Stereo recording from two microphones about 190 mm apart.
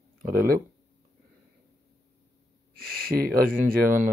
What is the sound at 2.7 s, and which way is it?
Speech, 50° right (ahead or behind).